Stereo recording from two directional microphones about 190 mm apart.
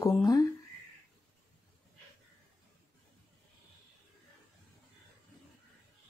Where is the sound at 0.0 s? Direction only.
15° left (ahead or behind).